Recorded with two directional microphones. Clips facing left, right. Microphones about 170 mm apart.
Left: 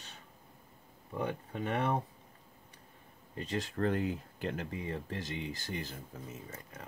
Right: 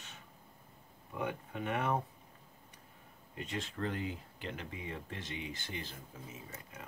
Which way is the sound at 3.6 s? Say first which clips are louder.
Left 6 dB; 45° left (ahead or behind).